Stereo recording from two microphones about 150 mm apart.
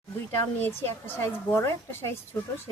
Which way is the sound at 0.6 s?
15° left (ahead or behind).